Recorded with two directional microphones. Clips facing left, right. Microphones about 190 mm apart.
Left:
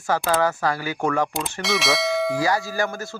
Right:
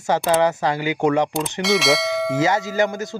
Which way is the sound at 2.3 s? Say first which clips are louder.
Right 3 dB; 20° right (ahead or behind).